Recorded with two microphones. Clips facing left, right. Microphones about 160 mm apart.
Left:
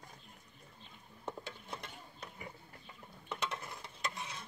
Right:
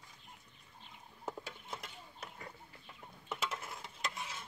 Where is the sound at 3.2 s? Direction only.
5° right (ahead or behind).